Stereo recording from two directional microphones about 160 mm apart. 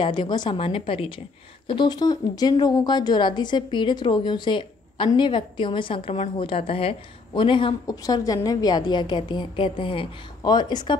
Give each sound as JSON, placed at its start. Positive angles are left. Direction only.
{"t": 0.0, "sound": "a woman's voice", "side_deg": 30}